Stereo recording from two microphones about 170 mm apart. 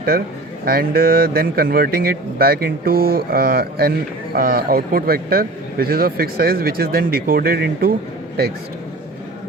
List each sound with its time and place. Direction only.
0.6 s speech: 60° right (ahead or behind)